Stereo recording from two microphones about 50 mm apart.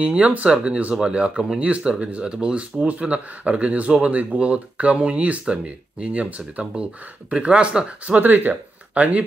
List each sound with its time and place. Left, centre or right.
0.2 s speech: right
8.2 s speech: right